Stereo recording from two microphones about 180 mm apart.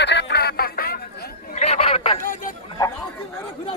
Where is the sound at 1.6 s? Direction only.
35° left (ahead or behind).